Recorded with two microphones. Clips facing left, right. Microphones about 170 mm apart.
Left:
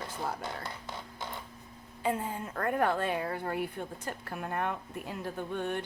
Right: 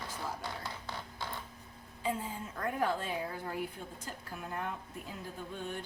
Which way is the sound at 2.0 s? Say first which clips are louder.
Left 4 dB; 60° left (ahead or behind).